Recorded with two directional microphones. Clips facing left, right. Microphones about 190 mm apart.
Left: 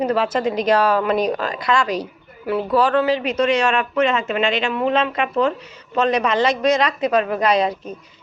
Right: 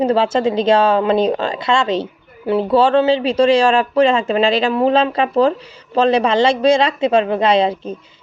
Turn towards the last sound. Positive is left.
turn(degrees=-25)  # may be behind; listen again after turning